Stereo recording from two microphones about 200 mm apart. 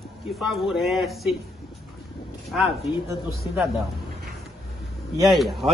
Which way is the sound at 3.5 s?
Centre (ahead or behind).